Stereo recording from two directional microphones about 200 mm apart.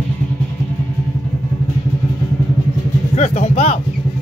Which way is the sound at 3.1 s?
35° left (ahead or behind).